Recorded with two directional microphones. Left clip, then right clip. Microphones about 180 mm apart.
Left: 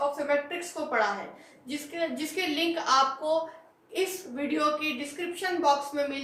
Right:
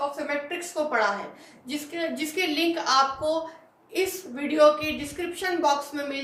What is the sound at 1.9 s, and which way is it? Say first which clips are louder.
A woman's voice: right 2 dB; 20° right (ahead or behind).